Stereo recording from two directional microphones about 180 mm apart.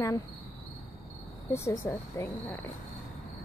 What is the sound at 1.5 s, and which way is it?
Speech, 15° left (ahead or behind).